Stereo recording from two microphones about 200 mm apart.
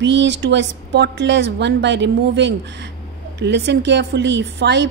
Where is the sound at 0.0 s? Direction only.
60° right (ahead or behind).